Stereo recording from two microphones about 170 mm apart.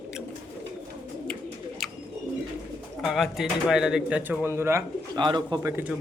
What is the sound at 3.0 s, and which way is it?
Speech, centre (ahead or behind).